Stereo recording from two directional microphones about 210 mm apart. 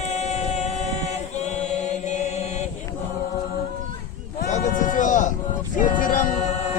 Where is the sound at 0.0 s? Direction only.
30° left (ahead or behind).